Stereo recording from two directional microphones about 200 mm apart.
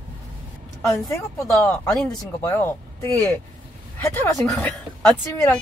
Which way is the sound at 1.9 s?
Centre (ahead or behind).